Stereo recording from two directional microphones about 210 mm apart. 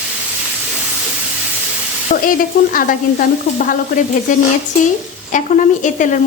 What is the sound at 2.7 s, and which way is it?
Stir, 40° left (ahead or behind).